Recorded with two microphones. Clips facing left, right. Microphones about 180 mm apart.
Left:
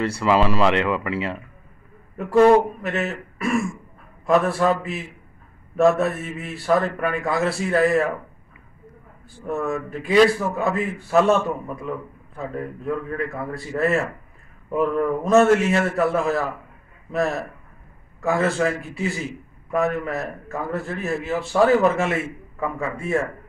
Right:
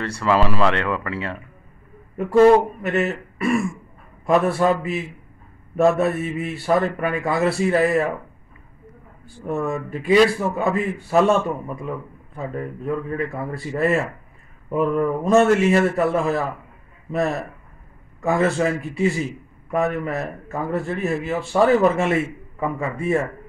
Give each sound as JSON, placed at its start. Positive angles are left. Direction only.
{"t": 0.0, "sound": "a man's voice", "side_deg": 5}
{"t": 0.9, "sound": "speech", "side_deg": 25}
{"t": 2.8, "sound": "a man's voice", "side_deg": 0}
{"t": 9.2, "sound": "a man's voice", "side_deg": 0}
{"t": 12.4, "sound": "a man's voice", "side_deg": 0}